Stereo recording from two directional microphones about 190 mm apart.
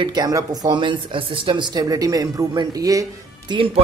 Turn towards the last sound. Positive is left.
turn(degrees=-30)  # may be behind; listen again after turning